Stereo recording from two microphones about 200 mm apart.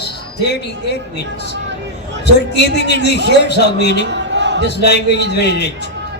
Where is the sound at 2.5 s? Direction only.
60° left (ahead or behind).